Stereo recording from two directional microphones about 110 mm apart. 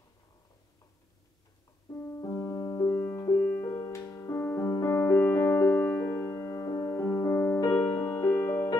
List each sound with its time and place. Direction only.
1.9 s music: 25° left (ahead or behind)
2.9 s music: 20° left (ahead or behind)